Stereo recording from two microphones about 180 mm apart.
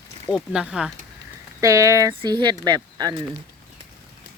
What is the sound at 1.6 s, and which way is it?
Speech, 15° right (ahead or behind).